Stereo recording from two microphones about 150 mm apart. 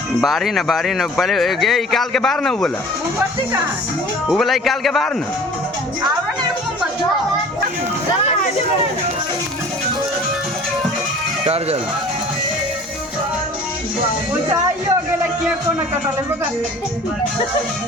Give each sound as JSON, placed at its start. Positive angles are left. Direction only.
{"t": 0.2, "sound": "speech", "side_deg": 0}
{"t": 4.3, "sound": "speech", "side_deg": 0}
{"t": 11.4, "sound": "speech", "side_deg": -40}